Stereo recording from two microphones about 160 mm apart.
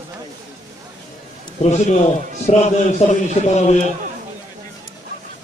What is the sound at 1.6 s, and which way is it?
A man's voice, 45° left (ahead or behind).